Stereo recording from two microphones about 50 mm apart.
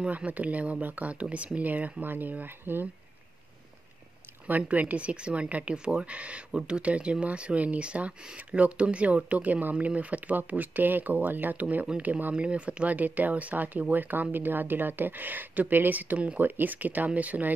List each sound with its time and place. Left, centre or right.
0.1 s speech: right
4.5 s speech: right